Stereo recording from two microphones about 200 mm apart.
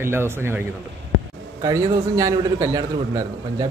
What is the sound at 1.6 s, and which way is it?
A man's voice, 15° right (ahead or behind).